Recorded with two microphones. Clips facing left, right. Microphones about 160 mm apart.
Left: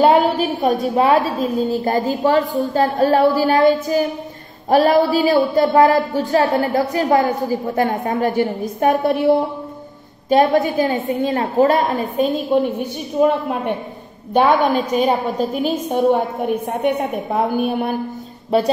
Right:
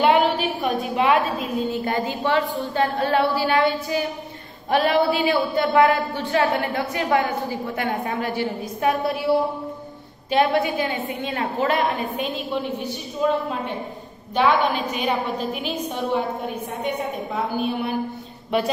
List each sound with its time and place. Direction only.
0.0 s a woman's voice: 40° left (ahead or behind)
10.3 s a woman's voice: 40° left (ahead or behind)
13.2 s a woman's voice: 60° left (ahead or behind)
14.3 s a woman's voice: 50° left (ahead or behind)